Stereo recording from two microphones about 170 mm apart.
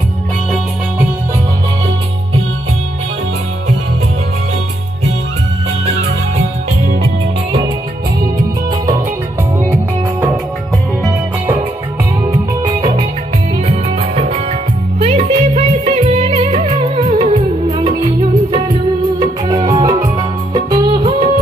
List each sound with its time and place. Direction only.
12.3 s music: 25° right (ahead or behind)
13.7 s music: 35° right (ahead or behind)
19.1 s music: 25° right (ahead or behind)